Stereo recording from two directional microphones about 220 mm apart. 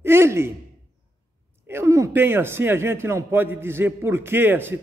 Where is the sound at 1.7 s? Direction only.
15° right (ahead or behind).